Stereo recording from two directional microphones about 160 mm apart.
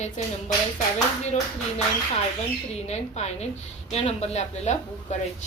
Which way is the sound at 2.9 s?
45° left (ahead or behind).